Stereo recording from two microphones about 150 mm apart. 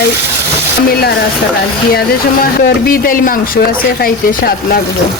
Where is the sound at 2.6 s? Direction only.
75° left (ahead or behind).